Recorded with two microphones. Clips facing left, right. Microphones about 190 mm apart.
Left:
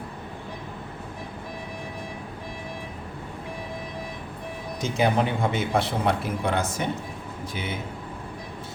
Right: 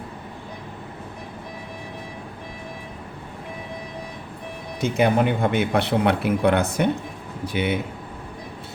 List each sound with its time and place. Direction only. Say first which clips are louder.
4.8 s speech: right 4 dB; 60° right (ahead or behind)